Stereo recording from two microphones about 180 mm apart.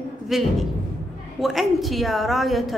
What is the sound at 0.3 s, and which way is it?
A woman's voice, centre (ahead or behind).